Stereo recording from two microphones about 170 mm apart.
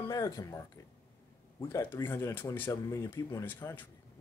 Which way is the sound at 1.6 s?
15° left (ahead or behind).